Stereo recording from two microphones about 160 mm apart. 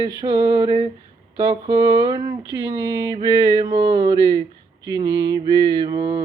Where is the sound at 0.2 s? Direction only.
25° right (ahead or behind).